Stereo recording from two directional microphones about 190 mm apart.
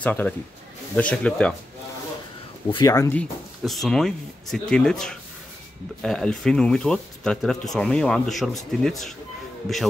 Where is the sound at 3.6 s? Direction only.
Centre (ahead or behind).